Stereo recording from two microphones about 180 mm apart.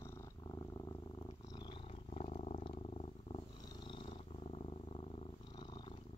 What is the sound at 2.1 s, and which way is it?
Wild animals, 35° left (ahead or behind).